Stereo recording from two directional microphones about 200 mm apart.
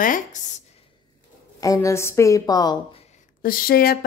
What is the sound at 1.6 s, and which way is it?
A woman's voice, 15° left (ahead or behind).